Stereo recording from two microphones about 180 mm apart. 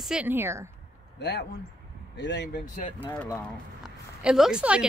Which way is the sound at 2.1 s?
75° left (ahead or behind).